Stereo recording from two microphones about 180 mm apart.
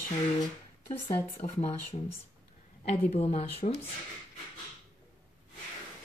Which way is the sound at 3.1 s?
35° left (ahead or behind).